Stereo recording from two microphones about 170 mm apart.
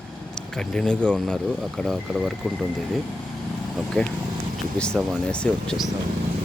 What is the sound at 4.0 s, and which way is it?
Speech, 5° left (ahead or behind).